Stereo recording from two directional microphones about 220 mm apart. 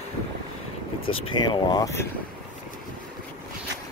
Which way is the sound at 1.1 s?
20° left (ahead or behind).